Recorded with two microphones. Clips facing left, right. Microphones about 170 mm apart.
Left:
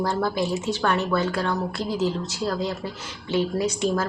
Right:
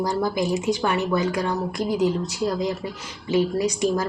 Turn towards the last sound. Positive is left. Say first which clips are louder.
# right 1 dB
turn(degrees=-15)  # may be behind; listen again after turning